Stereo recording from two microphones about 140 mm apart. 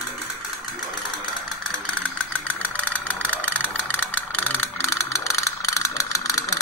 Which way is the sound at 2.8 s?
10° left (ahead or behind).